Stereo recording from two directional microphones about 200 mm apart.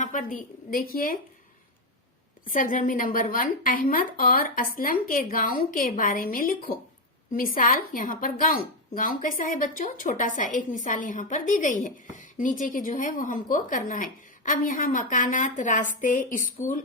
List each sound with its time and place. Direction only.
0.0 s a woman's voice: 40° left (ahead or behind)
2.5 s a woman's voice: 40° left (ahead or behind)